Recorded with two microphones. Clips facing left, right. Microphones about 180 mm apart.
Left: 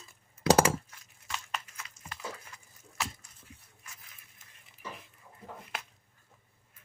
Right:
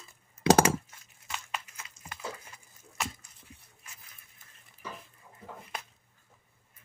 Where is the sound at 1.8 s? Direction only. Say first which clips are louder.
Right 1 dB; 25° right (ahead or behind).